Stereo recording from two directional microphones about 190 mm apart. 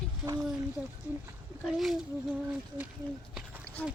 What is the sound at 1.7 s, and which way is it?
Speech, centre (ahead or behind).